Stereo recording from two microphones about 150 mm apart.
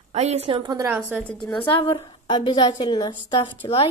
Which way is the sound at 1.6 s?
40° left (ahead or behind).